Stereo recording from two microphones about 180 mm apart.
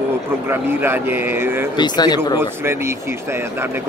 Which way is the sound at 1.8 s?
25° left (ahead or behind).